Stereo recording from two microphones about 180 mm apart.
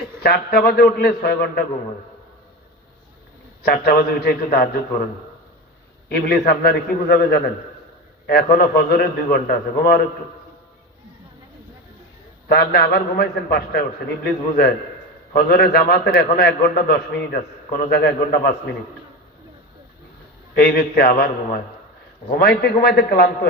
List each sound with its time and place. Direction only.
0.2 s a man's voice: 55° left (ahead or behind)
3.7 s a man's voice: 60° left (ahead or behind)
6.1 s a man's voice: 60° left (ahead or behind)
12.5 s a man's voice: 60° left (ahead or behind)
20.6 s a man's voice: 60° left (ahead or behind)